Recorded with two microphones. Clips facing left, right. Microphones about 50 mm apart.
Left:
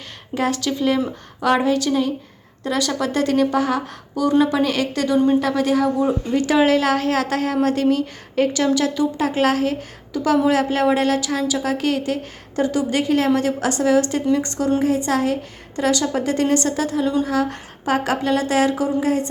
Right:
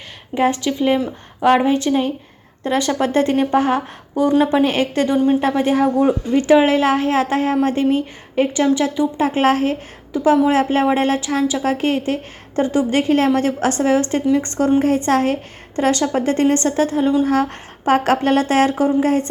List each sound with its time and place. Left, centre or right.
0.3 s a woman's voice: right